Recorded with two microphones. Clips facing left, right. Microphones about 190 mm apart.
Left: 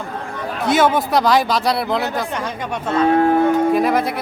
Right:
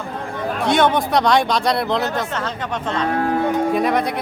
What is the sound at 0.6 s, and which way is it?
Speech, 5° left (ahead or behind).